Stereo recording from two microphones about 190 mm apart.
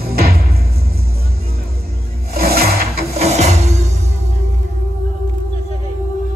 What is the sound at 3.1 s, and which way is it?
Music, 35° right (ahead or behind).